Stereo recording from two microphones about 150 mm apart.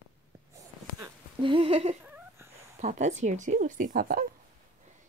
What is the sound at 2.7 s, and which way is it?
Speech, 50° right (ahead or behind).